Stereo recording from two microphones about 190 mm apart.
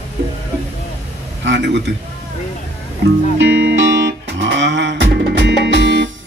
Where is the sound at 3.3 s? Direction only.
70° right (ahead or behind).